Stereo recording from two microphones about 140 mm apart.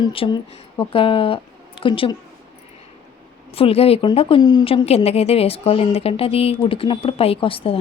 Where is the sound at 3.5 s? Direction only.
45° left (ahead or behind).